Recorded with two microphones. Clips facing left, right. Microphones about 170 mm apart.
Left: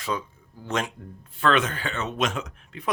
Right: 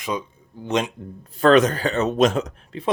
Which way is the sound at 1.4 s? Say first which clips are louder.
Right 8 dB; 40° right (ahead or behind).